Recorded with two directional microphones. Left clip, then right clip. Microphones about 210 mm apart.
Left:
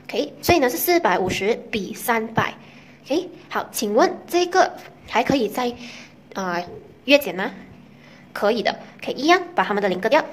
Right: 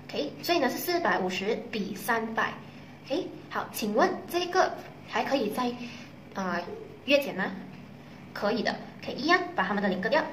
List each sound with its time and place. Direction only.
0.0 s a woman's voice: 45° left (ahead or behind)